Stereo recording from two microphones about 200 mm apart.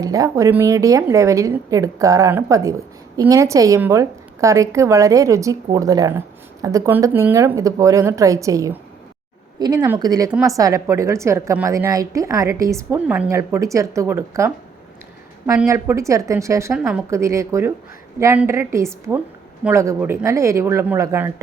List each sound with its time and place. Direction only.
0.0 s a woman's voice: 15° right (ahead or behind)